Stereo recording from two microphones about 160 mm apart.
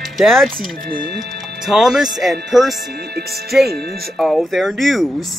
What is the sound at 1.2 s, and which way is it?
Speech, centre (ahead or behind).